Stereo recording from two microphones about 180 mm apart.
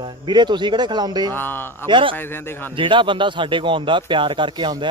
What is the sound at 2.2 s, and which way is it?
Speech, 10° left (ahead or behind).